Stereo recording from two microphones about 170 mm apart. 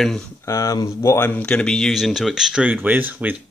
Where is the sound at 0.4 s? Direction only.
20° left (ahead or behind).